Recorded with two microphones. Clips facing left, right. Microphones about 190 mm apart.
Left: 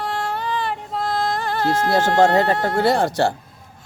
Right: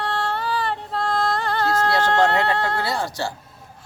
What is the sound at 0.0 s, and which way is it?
Music, centre (ahead or behind).